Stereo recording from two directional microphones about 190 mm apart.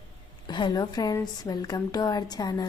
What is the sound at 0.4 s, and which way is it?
A woman's voice, 25° left (ahead or behind).